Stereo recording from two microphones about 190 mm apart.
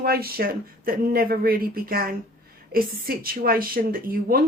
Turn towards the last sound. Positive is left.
turn(degrees=-50)  # may be behind; listen again after turning